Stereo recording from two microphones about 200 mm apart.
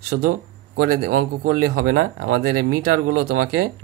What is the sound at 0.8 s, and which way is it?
Speech, 50° right (ahead or behind).